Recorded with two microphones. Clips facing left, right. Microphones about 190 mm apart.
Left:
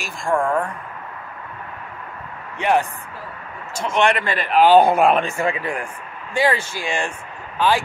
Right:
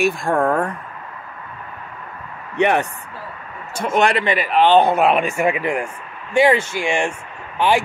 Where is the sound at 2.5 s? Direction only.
65° right (ahead or behind).